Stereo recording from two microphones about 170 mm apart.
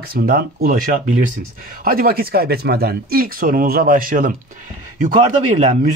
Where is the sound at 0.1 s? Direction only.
60° right (ahead or behind).